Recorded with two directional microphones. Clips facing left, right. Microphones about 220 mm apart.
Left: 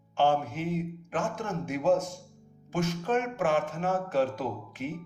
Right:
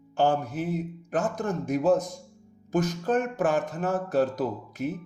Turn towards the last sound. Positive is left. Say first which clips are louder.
# right 5 dB
turn(degrees=-40)  # may be behind; listen again after turning